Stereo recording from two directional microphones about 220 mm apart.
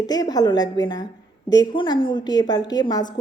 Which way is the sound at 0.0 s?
20° left (ahead or behind).